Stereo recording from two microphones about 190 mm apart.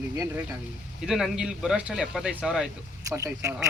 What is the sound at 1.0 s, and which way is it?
Speech, centre (ahead or behind).